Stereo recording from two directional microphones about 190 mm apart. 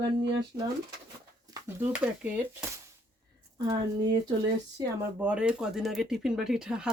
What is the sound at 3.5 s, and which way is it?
Speech, 20° right (ahead or behind).